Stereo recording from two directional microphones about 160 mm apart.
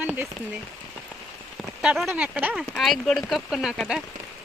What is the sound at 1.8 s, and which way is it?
Speech, 5° right (ahead or behind).